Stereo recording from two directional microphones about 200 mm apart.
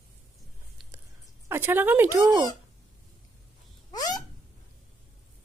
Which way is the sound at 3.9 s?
20° left (ahead or behind).